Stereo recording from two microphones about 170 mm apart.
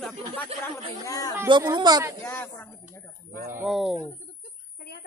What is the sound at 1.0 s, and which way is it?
Speech, 20° left (ahead or behind).